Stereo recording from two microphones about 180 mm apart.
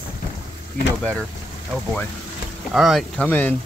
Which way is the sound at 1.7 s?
5° left (ahead or behind).